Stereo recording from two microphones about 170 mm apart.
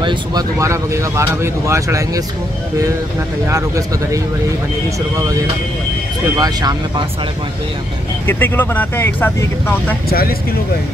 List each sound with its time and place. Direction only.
0.0 s speech: 25° right (ahead or behind)
3.4 s speech: 20° right (ahead or behind)
6.3 s speech: 20° right (ahead or behind)
8.3 s speech: 10° left (ahead or behind)
10.0 s speech: 60° left (ahead or behind)